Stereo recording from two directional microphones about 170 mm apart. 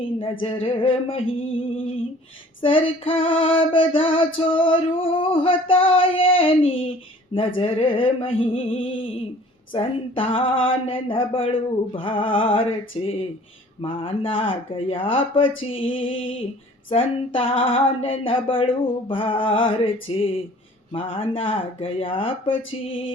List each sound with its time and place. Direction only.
0.2 s female singing: 35° left (ahead or behind)